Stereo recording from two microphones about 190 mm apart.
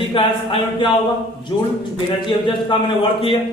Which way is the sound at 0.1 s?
25° left (ahead or behind).